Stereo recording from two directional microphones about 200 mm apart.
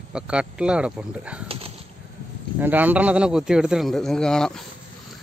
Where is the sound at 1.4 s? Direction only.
30° right (ahead or behind).